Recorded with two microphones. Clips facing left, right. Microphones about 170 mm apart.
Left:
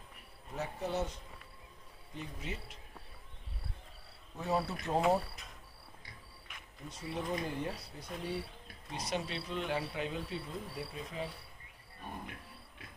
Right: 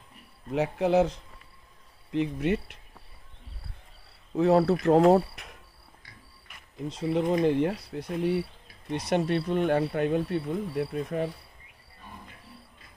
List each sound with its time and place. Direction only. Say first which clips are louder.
0.5 s speech: right 13 dB; 90° right
2.1 s speech: right 17 dB; 75° right (ahead or behind)
4.4 s speech: right 13 dB; 90° right; by 5.6 s 70° right (ahead or behind)
6.9 s speech: right 12 dB; 85° right
7.4 s speech: right 14 dB; 75° right (ahead or behind)
8.9 s speech: right 12 dB; 60° right (ahead or behind)